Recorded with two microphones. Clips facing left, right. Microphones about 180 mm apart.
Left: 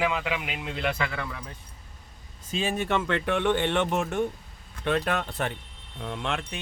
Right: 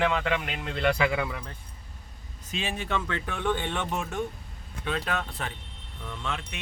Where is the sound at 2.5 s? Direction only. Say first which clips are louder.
Left 5 dB; 35° left (ahead or behind).